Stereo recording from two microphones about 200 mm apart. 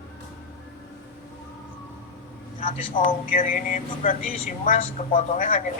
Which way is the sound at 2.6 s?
35° left (ahead or behind).